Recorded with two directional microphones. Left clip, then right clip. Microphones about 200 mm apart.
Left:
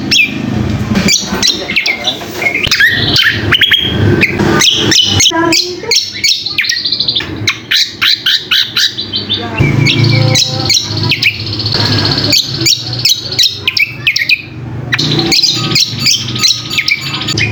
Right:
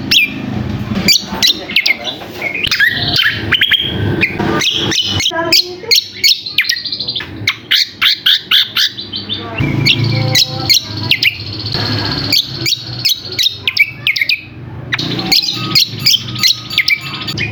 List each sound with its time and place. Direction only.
0.1 s a sound: 30° right (ahead or behind)
1.0 s bird: 30° right (ahead or behind)
2.6 s bird: 10° right (ahead or behind)
4.2 s a sound: centre (ahead or behind)
5.5 s bird: 30° right (ahead or behind)
7.4 s bird: 15° right (ahead or behind)
9.8 s chirp: 25° right (ahead or behind)
12.0 s a sound: 10° right (ahead or behind)
15.3 s chirp: 25° right (ahead or behind)